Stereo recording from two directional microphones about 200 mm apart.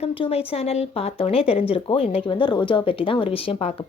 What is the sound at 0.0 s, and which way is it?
Speech, 30° left (ahead or behind).